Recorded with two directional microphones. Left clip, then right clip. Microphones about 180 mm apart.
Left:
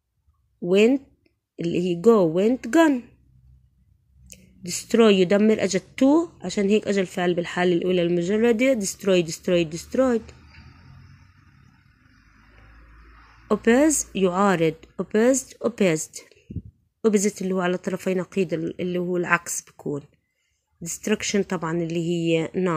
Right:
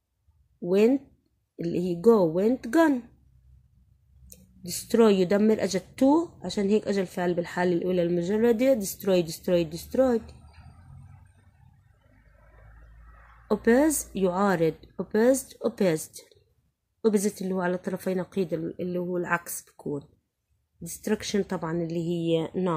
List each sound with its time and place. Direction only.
0.7 s a woman's voice: 20° left (ahead or behind)
4.3 s a woman's voice: 20° left (ahead or behind)
13.5 s a woman's voice: 20° left (ahead or behind)